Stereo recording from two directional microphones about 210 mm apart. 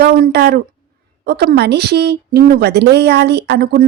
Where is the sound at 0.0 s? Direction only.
50° right (ahead or behind).